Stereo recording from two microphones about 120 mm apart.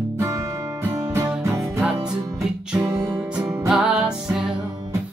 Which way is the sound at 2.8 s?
30° right (ahead or behind).